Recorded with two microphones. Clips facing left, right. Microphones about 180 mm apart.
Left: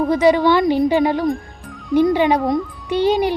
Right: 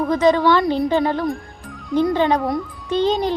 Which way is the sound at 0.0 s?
15° left (ahead or behind).